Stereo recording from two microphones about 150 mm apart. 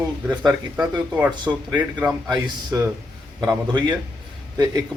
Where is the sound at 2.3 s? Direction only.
30° right (ahead or behind).